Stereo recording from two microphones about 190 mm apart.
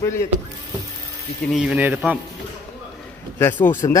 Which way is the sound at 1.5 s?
5° right (ahead or behind).